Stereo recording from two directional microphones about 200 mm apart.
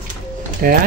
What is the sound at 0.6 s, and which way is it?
Speech, 50° right (ahead or behind).